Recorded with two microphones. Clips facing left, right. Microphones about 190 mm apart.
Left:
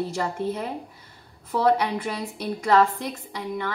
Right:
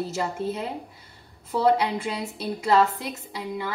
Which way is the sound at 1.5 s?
15° right (ahead or behind).